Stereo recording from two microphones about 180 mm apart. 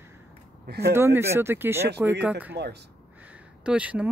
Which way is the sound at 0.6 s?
60° right (ahead or behind).